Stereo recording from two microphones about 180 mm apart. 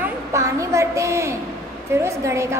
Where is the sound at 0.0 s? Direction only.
15° right (ahead or behind).